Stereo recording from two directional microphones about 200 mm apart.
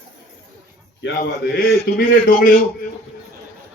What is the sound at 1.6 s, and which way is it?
Speech, 50° left (ahead or behind).